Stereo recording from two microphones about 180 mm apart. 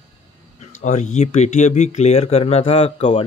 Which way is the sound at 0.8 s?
40° left (ahead or behind).